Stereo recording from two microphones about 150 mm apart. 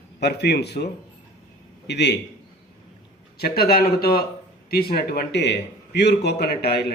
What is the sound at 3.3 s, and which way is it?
A man's voice, 90° left.